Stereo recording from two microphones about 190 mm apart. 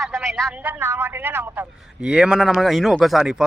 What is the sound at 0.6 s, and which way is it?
A man's voice, 10° right (ahead or behind).